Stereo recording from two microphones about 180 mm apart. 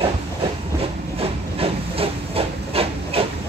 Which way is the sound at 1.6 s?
30° right (ahead or behind).